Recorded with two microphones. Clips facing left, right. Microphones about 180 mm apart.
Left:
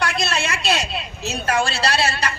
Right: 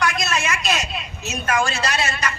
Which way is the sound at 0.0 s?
30° left (ahead or behind).